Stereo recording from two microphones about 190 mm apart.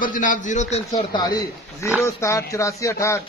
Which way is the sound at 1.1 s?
20° left (ahead or behind).